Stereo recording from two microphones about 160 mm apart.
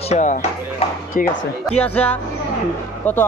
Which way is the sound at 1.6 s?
10° left (ahead or behind).